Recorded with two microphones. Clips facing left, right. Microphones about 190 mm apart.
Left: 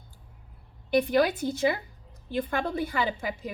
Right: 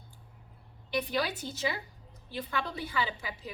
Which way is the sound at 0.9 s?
50° left (ahead or behind).